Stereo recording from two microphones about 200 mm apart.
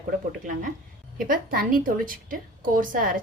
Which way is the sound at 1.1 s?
45° right (ahead or behind).